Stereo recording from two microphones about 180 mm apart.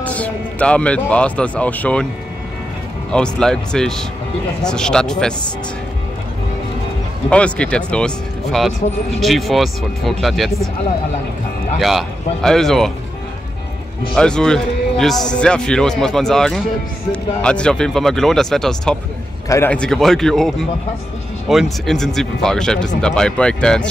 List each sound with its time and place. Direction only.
0.0 s speech: 10° left (ahead or behind)
3.1 s a man's voice: 5° left (ahead or behind)
7.2 s a man's voice: 5° left (ahead or behind)
11.8 s a man's voice: centre (ahead or behind)
14.1 s a man's voice: 5° left (ahead or behind)